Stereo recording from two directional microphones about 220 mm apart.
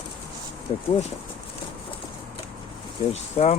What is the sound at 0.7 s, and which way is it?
Speech, 25° left (ahead or behind).